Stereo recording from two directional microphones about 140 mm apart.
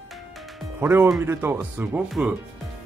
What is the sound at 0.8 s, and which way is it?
Speech, 15° right (ahead or behind).